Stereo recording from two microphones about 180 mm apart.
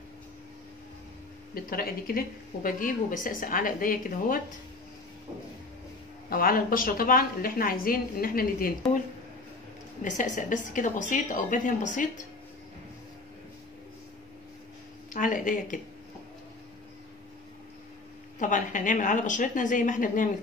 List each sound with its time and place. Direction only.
1.5 s speech: 55° left (ahead or behind)
6.3 s speech: 50° left (ahead or behind)
10.0 s speech: 45° left (ahead or behind)
15.1 s speech: 45° left (ahead or behind)
18.4 s speech: 45° left (ahead or behind)